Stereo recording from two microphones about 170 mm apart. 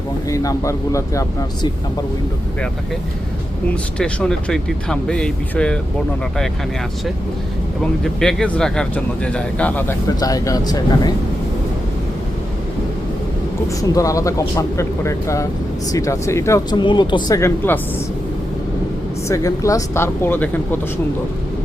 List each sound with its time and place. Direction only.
0.3 s speech: 20° left (ahead or behind)
3.9 s speech: 5° left (ahead or behind)
7.8 s speech: 5° left (ahead or behind)
10.2 s speech: 20° left (ahead or behind)
13.7 s speech: 20° left (ahead or behind)
19.3 s speech: 20° left (ahead or behind)